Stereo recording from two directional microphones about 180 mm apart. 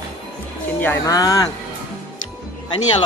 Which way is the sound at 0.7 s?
15° left (ahead or behind).